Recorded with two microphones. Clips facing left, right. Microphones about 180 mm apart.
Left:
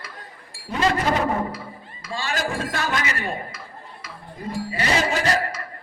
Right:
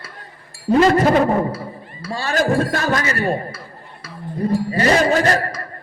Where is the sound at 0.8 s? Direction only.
45° right (ahead or behind).